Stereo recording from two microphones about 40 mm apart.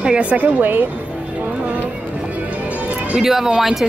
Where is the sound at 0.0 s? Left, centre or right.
Right.